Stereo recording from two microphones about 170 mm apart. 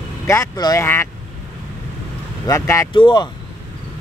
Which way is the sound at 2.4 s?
20° left (ahead or behind).